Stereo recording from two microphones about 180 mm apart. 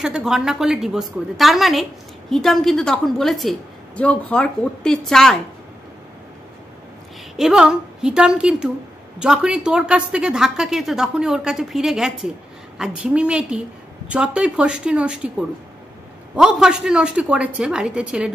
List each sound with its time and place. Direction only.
0.0 s a woman's voice: 5° right (ahead or behind)
7.3 s a woman's voice: 5° right (ahead or behind)